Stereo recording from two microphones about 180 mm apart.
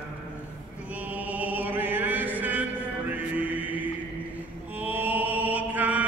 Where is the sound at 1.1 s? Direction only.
10° right (ahead or behind).